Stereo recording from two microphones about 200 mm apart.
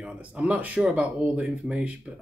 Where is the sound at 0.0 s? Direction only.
5° right (ahead or behind).